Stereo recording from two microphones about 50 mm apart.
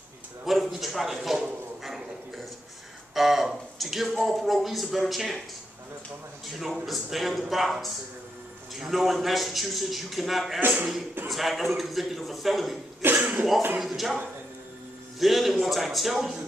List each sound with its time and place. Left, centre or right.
0.5 s a man's voice: centre
6.4 s a man's voice: centre
13.2 s speech: right
13.7 s a man's voice: centre